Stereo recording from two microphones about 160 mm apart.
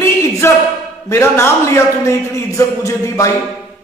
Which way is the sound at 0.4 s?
15° left (ahead or behind).